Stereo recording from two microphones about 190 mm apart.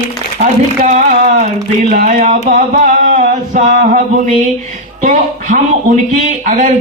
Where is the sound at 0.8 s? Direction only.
45° right (ahead or behind).